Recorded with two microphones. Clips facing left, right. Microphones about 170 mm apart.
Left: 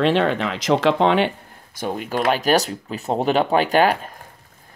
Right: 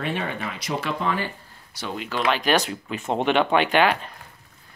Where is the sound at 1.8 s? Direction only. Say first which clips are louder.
Left 5 dB; 50° left (ahead or behind).